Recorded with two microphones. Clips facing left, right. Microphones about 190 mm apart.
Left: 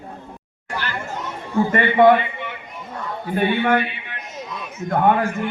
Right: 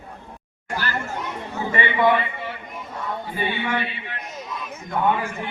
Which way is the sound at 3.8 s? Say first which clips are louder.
Even; 30° right (ahead or behind).